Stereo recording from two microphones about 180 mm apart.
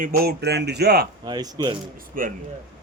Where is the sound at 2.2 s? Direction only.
50° right (ahead or behind).